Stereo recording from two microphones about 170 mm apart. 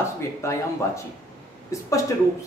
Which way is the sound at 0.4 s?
15° left (ahead or behind).